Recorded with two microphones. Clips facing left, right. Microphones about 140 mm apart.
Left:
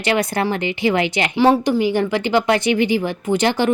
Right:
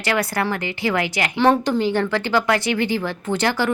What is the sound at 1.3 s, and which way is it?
A woman's voice, 10° left (ahead or behind).